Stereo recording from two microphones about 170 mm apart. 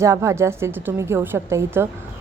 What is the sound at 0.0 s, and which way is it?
A woman's voice, 15° right (ahead or behind).